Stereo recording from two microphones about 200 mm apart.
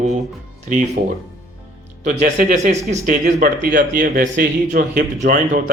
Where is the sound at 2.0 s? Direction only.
40° right (ahead or behind).